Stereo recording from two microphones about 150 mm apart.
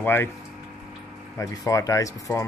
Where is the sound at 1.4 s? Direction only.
20° left (ahead or behind).